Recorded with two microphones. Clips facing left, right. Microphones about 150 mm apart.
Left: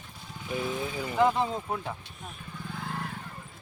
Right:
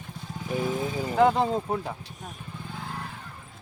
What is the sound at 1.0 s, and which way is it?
Speech, 40° right (ahead or behind).